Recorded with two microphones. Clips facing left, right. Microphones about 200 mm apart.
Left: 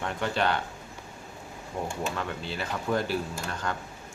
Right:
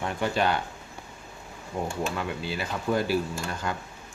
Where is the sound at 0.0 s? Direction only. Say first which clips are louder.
Right 2 dB; 10° right (ahead or behind).